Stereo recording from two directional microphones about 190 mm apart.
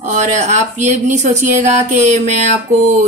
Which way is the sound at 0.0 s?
40° right (ahead or behind).